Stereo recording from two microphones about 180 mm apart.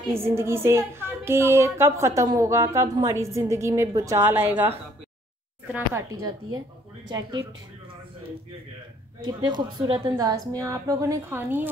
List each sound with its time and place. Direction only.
0.1 s a woman's voice: 15° right (ahead or behind)
6.0 s a woman's voice: 20° right (ahead or behind)
9.2 s a woman's voice: 25° right (ahead or behind)